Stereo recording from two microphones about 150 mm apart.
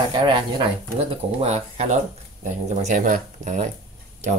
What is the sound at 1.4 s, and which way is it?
Speech, 45° right (ahead or behind).